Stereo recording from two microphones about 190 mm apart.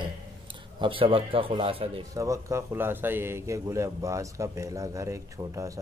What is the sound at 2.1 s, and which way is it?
Speech, 15° right (ahead or behind).